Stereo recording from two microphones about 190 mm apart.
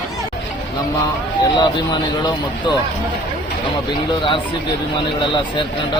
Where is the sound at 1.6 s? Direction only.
20° left (ahead or behind).